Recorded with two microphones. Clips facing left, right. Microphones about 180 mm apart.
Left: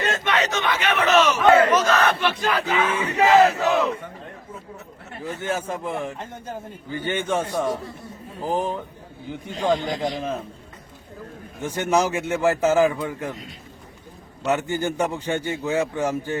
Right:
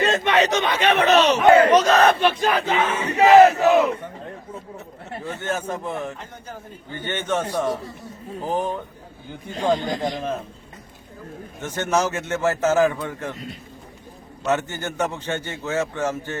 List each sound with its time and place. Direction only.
0.0 s chatter: 20° right (ahead or behind)
0.8 s speech: 35° right (ahead or behind)
1.7 s battle cry: 30° right (ahead or behind)
3.2 s crowd: 15° right (ahead or behind)
5.1 s battle cry: 30° right (ahead or behind)
5.4 s a man's voice: 10° left (ahead or behind)
7.0 s a man's voice: 10° left (ahead or behind)
11.6 s a man's voice: 10° left (ahead or behind)
14.4 s a man's voice: 15° left (ahead or behind)